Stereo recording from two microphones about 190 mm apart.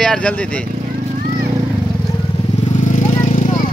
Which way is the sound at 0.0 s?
5° left (ahead or behind).